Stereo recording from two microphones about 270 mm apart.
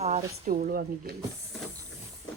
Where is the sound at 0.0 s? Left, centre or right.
Right.